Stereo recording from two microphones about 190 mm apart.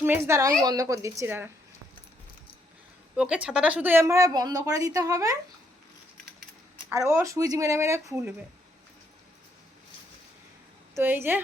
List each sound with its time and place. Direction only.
0.0 s a woman's voice: 15° right (ahead or behind)
3.2 s a woman's voice: 5° right (ahead or behind)
6.9 s a woman's voice: 15° right (ahead or behind)
10.9 s a woman's voice: 10° right (ahead or behind)